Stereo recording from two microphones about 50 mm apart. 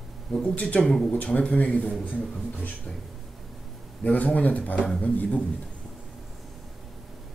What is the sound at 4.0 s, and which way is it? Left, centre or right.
Speech, left.